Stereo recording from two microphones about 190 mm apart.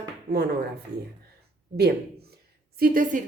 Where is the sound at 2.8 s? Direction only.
45° right (ahead or behind).